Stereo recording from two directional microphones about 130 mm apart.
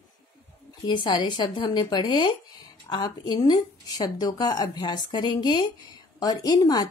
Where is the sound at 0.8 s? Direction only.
35° left (ahead or behind).